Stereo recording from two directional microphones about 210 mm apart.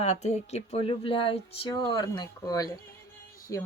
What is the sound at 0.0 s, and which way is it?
Speech, 35° left (ahead or behind).